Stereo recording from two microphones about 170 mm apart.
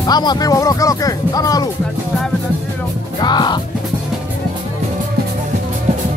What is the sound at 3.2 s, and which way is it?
Music, 25° left (ahead or behind).